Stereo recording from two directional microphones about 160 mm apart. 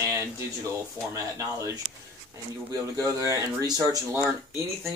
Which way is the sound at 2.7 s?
20° right (ahead or behind).